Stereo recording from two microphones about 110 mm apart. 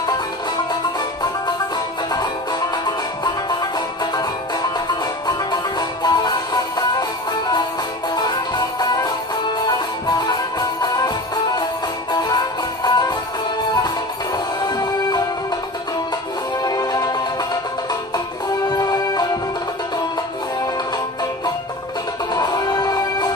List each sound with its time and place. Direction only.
3.4 s music: 40° left (ahead or behind)
8.1 s music: 40° left (ahead or behind)
16.6 s music: 35° left (ahead or behind)
18.7 s music: 35° left (ahead or behind)
22.3 s music: 35° left (ahead or behind)